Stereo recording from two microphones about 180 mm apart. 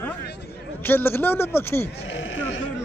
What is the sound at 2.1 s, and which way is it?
Sheep, 90° left.